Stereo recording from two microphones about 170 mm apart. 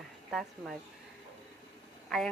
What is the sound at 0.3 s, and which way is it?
Speech, centre (ahead or behind).